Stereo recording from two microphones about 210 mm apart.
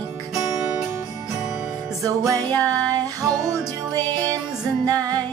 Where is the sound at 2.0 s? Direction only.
15° right (ahead or behind).